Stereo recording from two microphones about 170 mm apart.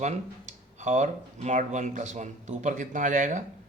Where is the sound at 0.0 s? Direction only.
45° right (ahead or behind).